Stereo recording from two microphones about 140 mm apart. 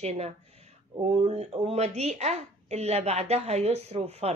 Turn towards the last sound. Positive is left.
turn(degrees=-50)  # may be behind; listen again after turning